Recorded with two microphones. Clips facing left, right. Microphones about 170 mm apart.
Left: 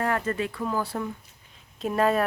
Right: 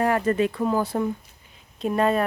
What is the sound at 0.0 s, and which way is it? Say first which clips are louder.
Speech: right 6 dB; 15° right (ahead or behind).